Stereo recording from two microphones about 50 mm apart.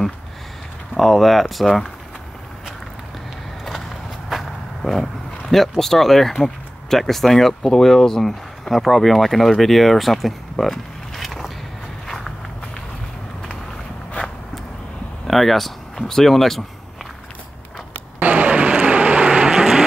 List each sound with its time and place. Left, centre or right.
0.9 s speech: centre
4.3 s speech: centre
15.2 s speech: centre
18.2 s vehicle: right